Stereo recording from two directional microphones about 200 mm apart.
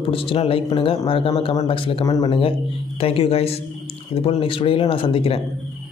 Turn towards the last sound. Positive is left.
turn(degrees=25)  # may be behind; listen again after turning